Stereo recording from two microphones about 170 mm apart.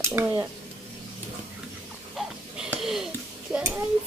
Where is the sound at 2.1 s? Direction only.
Centre (ahead or behind).